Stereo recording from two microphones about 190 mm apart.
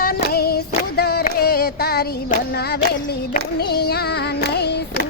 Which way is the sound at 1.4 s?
55° left (ahead or behind).